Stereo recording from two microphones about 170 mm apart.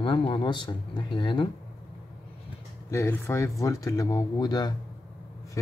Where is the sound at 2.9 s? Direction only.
15° left (ahead or behind).